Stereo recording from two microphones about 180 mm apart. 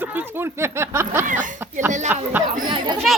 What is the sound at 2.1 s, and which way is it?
Speech, 10° right (ahead or behind).